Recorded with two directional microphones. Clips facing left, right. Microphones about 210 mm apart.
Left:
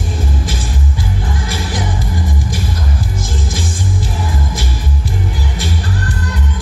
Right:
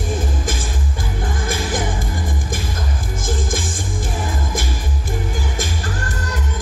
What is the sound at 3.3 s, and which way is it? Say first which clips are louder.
Music: even; 50° right (ahead or behind).